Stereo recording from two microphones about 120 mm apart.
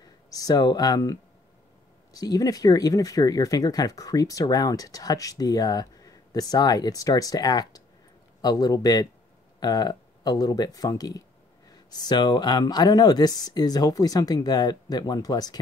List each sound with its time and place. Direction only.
0.0 s speech: 30° left (ahead or behind)